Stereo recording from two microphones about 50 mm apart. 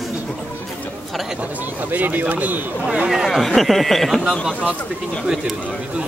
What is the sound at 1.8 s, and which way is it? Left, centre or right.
Speech, right.